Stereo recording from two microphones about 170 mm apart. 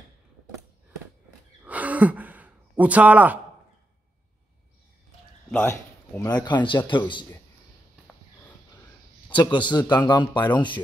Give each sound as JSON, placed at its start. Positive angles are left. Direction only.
{"t": 1.6, "sound": "a sound", "side_deg": -10}
{"t": 5.7, "sound": "speech", "side_deg": 15}
{"t": 9.3, "sound": "speech", "side_deg": 25}